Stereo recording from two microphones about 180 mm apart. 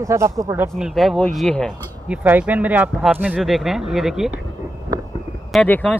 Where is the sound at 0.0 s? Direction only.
15° right (ahead or behind).